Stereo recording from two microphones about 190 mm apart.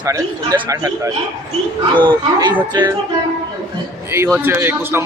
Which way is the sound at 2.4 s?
20° right (ahead or behind).